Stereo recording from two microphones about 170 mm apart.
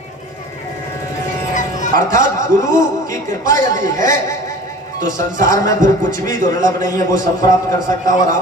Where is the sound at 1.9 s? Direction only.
50° right (ahead or behind).